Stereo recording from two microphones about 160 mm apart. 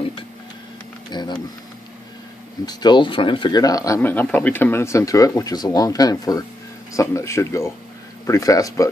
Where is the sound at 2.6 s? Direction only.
25° left (ahead or behind).